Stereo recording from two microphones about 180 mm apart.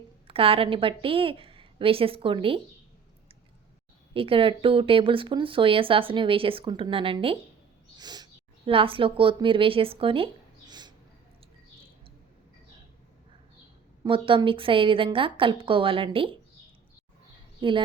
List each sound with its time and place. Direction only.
0.3 s a woman's voice: 30° right (ahead or behind)
4.1 s speech: 30° right (ahead or behind)
10.7 s a sound: 25° right (ahead or behind)
14.0 s speech: 30° right (ahead or behind)
17.6 s speech: 25° right (ahead or behind)